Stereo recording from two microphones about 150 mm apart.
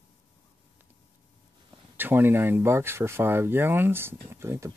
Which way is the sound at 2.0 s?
15° right (ahead or behind).